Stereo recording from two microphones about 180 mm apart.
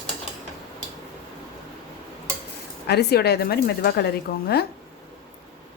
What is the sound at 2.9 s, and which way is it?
A woman's voice, 65° left (ahead or behind).